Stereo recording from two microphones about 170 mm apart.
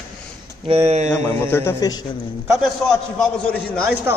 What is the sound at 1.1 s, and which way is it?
Speech, 15° left (ahead or behind).